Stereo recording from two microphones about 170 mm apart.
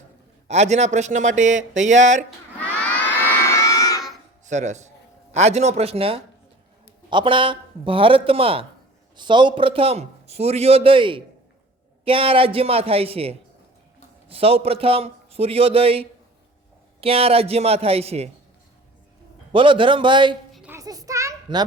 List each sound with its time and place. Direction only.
0.4 s speech: 40° right (ahead or behind)
3.4 s crowd: 15° left (ahead or behind)
4.4 s a man's voice: 45° right (ahead or behind)
19.5 s a man's voice: 30° right (ahead or behind)
20.5 s a sound: 5° right (ahead or behind)
20.7 s a sound: 20° right (ahead or behind)